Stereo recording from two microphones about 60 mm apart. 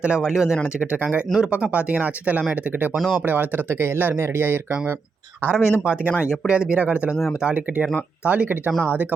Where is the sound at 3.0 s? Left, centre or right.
Centre.